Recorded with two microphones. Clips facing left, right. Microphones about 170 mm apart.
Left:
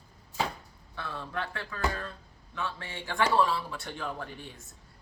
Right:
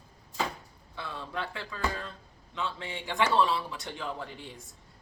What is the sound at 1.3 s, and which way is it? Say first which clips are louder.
A woman's voice: even; 15° right (ahead or behind).